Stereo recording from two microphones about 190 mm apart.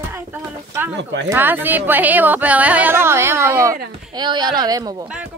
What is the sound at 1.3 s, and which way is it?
Speech, 10° right (ahead or behind).